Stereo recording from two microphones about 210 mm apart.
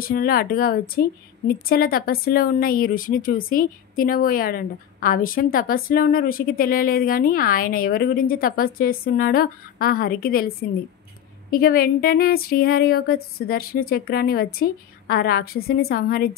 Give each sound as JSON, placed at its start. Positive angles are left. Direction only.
{"t": 0.0, "sound": "speech", "side_deg": 45}